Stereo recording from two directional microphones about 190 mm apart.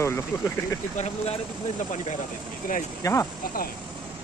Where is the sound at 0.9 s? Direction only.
35° left (ahead or behind).